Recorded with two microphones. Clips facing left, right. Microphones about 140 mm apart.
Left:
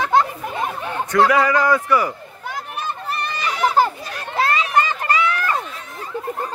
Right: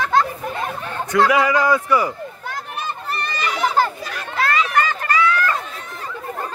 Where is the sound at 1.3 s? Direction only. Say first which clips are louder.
Even; 15° right (ahead or behind).